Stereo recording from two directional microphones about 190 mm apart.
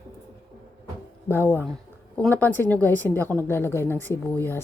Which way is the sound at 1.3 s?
10° left (ahead or behind).